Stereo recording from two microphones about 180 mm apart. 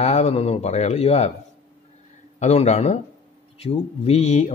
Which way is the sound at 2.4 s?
35° left (ahead or behind).